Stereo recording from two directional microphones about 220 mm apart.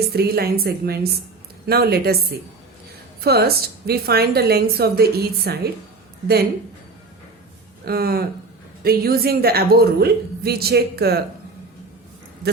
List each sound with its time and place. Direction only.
0.1 s a woman's voice: 45° right (ahead or behind)
7.9 s a woman's voice: 45° right (ahead or behind)